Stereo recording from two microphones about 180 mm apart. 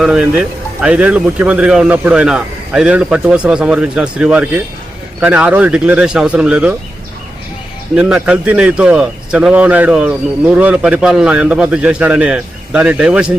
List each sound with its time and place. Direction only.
0.0 s a man's voice: 5° right (ahead or behind)
7.9 s a man's voice: 5° right (ahead or behind)